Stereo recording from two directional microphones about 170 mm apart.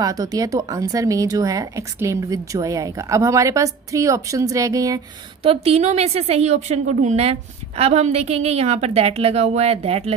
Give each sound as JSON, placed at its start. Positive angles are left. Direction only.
{"t": 0.0, "sound": "speech", "side_deg": -20}
{"t": 5.4, "sound": "a woman's voice", "side_deg": -35}